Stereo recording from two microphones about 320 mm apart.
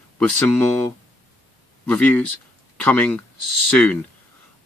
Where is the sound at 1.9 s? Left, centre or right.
Centre.